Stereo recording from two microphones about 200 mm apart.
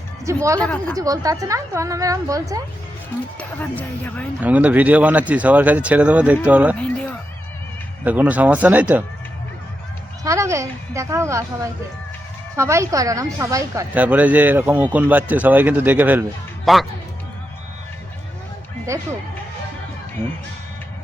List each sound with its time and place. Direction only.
0.3 s speech: 15° right (ahead or behind)
0.6 s speech: 5° left (ahead or behind)
0.9 s speech: 15° right (ahead or behind)
3.6 s speech: 10° left (ahead or behind)
4.4 s speech: 10° right (ahead or behind)
6.7 s speech: 5° left (ahead or behind)
8.0 s speech: 10° right (ahead or behind)
10.2 s speech: 15° right (ahead or behind)